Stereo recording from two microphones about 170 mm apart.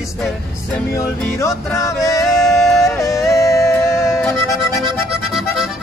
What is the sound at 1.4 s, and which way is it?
Music, 20° left (ahead or behind).